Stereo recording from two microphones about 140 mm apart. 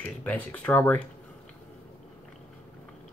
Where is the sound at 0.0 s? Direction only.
10° left (ahead or behind).